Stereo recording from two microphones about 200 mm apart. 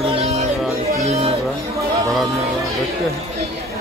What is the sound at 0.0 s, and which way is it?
Music, 30° right (ahead or behind).